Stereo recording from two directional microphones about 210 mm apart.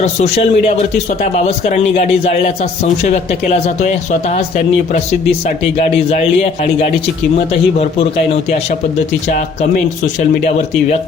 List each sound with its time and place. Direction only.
0.0 s speech: 30° left (ahead or behind)
5.8 s speech: 30° left (ahead or behind)
7.3 s speech: 30° left (ahead or behind)